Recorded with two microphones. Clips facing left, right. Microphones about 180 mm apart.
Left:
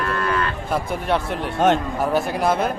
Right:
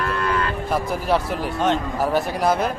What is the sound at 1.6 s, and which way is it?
Speech, 55° left (ahead or behind).